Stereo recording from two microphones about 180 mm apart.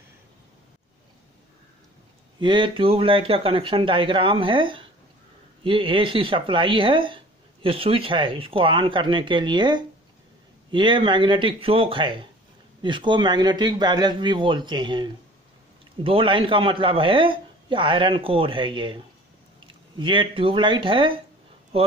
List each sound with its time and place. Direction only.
2.4 s speech: 25° right (ahead or behind)